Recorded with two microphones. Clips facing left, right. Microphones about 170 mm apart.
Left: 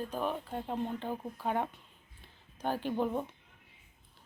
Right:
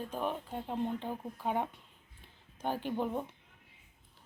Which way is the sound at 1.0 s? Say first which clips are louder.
Left 1 dB; 10° right (ahead or behind).